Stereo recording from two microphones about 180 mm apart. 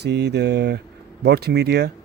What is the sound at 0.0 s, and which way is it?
Speech, 70° right (ahead or behind).